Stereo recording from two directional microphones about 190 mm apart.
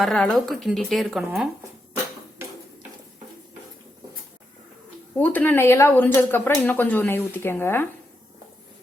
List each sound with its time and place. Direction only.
0.0 s speech: centre (ahead or behind)
5.1 s speech: 10° left (ahead or behind)